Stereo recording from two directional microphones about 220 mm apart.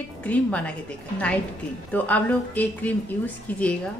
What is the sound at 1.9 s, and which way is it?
A woman's voice, 5° left (ahead or behind).